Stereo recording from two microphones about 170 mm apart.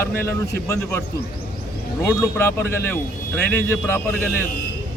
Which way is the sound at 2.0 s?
15° left (ahead or behind).